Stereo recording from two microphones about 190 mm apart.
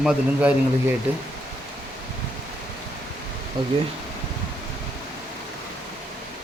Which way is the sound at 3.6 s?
25° right (ahead or behind).